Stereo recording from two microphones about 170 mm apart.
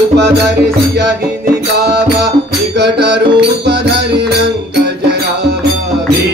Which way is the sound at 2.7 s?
75° right (ahead or behind).